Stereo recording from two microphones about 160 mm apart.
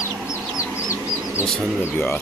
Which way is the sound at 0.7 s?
20° left (ahead or behind).